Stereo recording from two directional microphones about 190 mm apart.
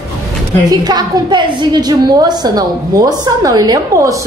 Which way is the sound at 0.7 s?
20° right (ahead or behind).